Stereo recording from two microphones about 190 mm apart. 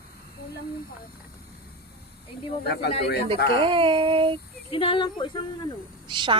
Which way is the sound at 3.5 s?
25° right (ahead or behind).